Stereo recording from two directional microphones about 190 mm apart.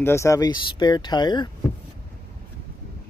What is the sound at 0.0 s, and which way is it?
Speech, 15° left (ahead or behind).